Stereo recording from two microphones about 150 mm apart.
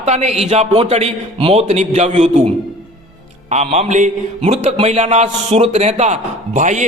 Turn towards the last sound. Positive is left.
turn(degrees=-55)  # may be behind; listen again after turning